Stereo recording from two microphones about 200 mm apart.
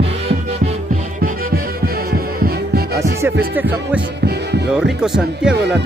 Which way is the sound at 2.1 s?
50° right (ahead or behind).